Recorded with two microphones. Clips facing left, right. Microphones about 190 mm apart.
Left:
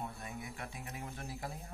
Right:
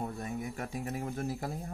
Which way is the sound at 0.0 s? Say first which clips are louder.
Right 8 dB; 40° right (ahead or behind).